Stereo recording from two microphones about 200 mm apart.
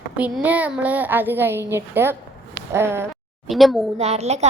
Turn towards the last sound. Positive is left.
turn(degrees=-35)  # may be behind; listen again after turning